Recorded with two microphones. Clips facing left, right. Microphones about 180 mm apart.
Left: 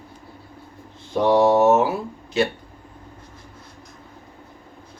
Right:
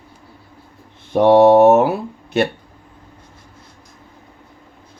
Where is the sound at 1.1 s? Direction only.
60° right (ahead or behind).